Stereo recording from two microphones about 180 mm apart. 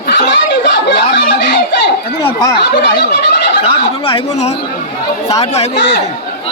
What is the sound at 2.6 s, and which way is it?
Speech, 70° left (ahead or behind).